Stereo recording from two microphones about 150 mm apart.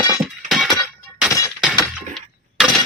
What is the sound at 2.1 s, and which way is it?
Breaking, centre (ahead or behind).